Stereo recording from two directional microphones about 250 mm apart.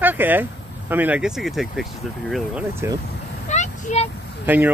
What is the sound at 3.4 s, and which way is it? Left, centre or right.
Vehicle, left.